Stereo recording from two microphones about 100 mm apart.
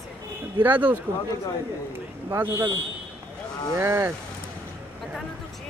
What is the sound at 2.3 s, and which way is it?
Speech, 20° right (ahead or behind).